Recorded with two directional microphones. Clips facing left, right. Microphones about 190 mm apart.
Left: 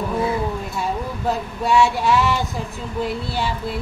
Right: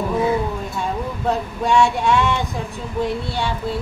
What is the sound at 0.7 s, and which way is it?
Speech, 5° left (ahead or behind).